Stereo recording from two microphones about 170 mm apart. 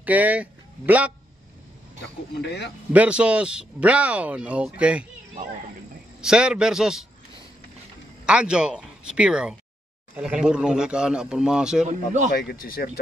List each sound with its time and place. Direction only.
0.0 s speech: 10° right (ahead or behind)
2.4 s speech: 80° left
2.9 s speech: 5° right (ahead or behind)
6.2 s a man's voice: 5° right (ahead or behind)
8.3 s a man's voice: 5° right (ahead or behind)
11.9 s speech: 45° right (ahead or behind)
12.3 s speech: 55° left (ahead or behind)